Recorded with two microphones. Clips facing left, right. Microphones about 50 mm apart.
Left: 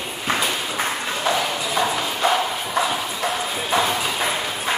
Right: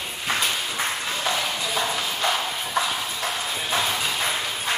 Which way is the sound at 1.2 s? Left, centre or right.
Centre.